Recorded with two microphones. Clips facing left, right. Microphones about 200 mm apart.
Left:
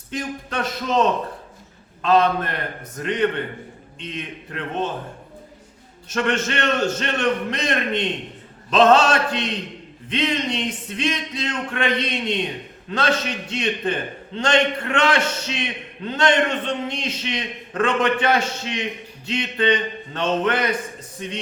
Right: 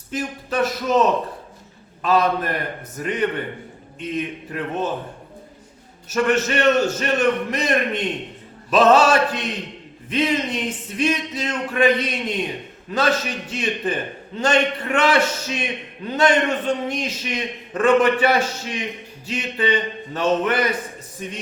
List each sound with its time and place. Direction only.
0.1 s a man's voice: 5° right (ahead or behind)
2.0 s a man's voice: 10° right (ahead or behind)
6.1 s a man's voice: 5° right (ahead or behind)